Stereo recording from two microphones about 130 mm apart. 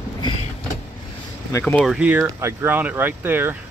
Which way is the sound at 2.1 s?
20° right (ahead or behind).